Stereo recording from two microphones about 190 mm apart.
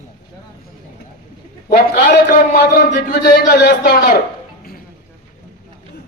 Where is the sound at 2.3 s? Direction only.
55° left (ahead or behind).